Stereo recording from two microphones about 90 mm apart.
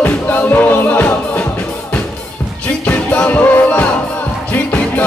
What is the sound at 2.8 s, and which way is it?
Music, 15° left (ahead or behind).